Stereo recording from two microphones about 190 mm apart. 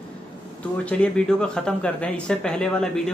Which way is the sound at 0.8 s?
5° left (ahead or behind).